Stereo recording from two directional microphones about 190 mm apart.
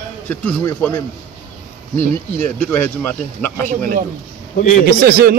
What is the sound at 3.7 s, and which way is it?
Speech, 50° right (ahead or behind).